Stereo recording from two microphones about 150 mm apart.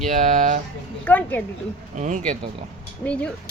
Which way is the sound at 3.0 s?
10° left (ahead or behind).